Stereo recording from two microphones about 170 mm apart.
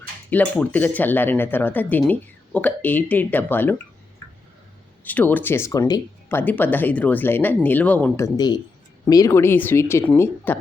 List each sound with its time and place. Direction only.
0.3 s speech: 10° left (ahead or behind)
5.0 s speech: 10° left (ahead or behind)